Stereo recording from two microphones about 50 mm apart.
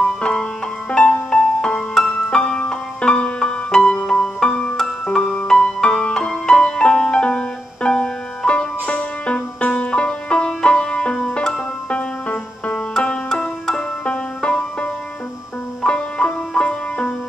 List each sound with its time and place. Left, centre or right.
0.0 s music: left
14.0 s music: left